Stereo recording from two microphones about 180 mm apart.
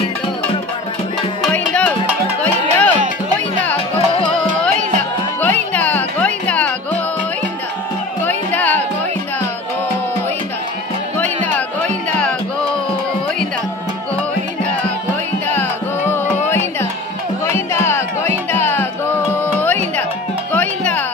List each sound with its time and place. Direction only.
1.7 s music: 5° left (ahead or behind)
3.9 s music: 25° left (ahead or behind)
5.4 s music: 10° left (ahead or behind)
8.3 s music: 10° left (ahead or behind)
11.1 s music: 10° left (ahead or behind)
15.5 s music: 10° left (ahead or behind)
17.5 s music: 15° left (ahead or behind)